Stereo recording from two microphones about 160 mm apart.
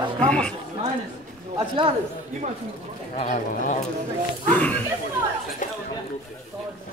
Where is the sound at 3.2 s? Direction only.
50° left (ahead or behind).